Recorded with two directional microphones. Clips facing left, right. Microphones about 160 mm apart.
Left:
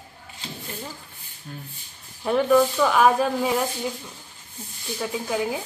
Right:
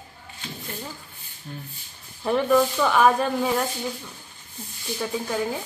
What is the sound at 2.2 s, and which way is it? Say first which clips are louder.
Speech: left 1 dB; centre (ahead or behind).